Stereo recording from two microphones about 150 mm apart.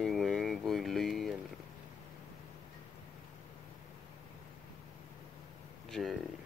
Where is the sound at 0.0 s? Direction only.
Centre (ahead or behind).